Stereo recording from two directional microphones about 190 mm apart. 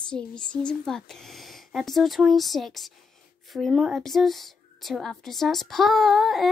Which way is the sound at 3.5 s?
Centre (ahead or behind).